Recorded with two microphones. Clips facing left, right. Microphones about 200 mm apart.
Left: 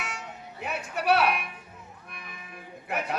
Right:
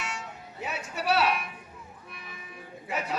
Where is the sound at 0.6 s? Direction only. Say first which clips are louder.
Left 3 dB; 55° left (ahead or behind).